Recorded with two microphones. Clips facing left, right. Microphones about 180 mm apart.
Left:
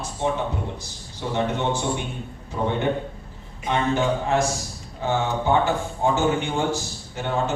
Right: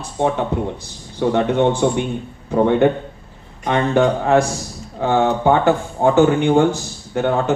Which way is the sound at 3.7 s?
60° right (ahead or behind).